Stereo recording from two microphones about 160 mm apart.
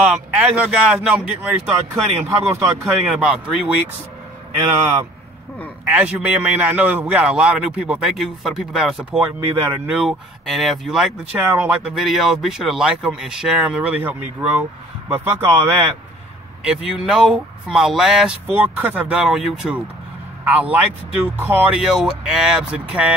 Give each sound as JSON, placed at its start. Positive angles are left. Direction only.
{"t": 0.0, "sound": "a man's voice", "side_deg": -10}
{"t": 5.9, "sound": "a man's voice", "side_deg": -5}
{"t": 16.6, "sound": "a man's voice", "side_deg": -5}